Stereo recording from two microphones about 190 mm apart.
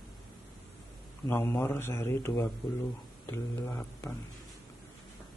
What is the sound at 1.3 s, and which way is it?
A man's voice, 10° left (ahead or behind).